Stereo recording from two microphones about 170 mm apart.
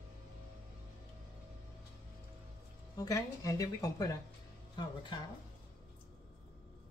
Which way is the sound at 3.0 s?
20° left (ahead or behind).